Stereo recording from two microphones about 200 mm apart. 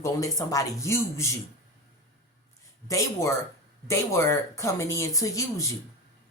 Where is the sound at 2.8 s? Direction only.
15° left (ahead or behind).